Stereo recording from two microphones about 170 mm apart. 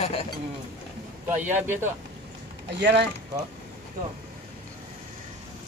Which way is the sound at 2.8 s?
80° right.